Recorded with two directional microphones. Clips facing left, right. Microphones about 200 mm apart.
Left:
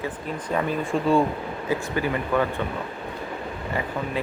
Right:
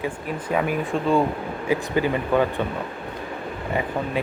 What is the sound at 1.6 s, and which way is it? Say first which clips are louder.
Speech: right 4 dB; 20° right (ahead or behind).